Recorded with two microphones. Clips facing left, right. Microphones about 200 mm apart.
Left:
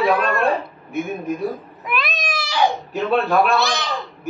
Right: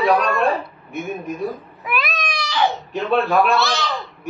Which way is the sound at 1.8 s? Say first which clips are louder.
Even; centre (ahead or behind).